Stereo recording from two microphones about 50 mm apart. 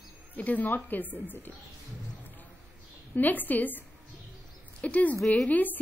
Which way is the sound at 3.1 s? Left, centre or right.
Left.